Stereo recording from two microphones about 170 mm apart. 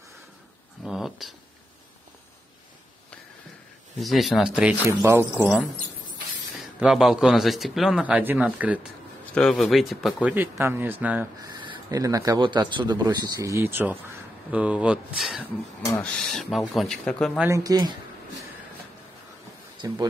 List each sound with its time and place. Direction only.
0.8 s a sound: centre (ahead or behind)
4.0 s a man's voice: centre (ahead or behind)
6.6 s a man's voice: 5° right (ahead or behind)
9.3 s a man's voice: 5° left (ahead or behind)
10.3 s speech: 15° right (ahead or behind)
11.5 s a man's voice: 25° right (ahead or behind); by 17.3 s 5° left (ahead or behind)
17.4 s speech: 20° right (ahead or behind)